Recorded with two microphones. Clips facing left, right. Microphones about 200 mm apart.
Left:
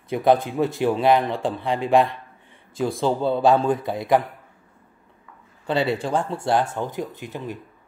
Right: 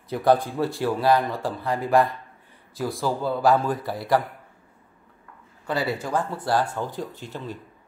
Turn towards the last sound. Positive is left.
turn(degrees=15)  # may be behind; listen again after turning